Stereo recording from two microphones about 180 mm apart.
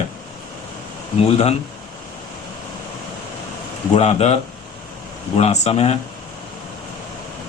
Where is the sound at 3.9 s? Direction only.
35° left (ahead or behind).